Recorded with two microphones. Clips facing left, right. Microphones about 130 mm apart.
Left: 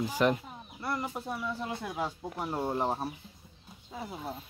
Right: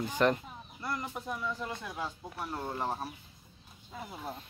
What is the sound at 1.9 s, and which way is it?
Speech, 20° left (ahead or behind).